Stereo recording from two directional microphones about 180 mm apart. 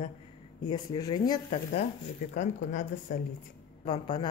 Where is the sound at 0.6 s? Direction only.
25° left (ahead or behind).